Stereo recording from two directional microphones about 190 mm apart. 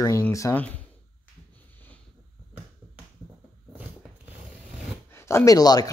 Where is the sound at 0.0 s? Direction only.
15° left (ahead or behind).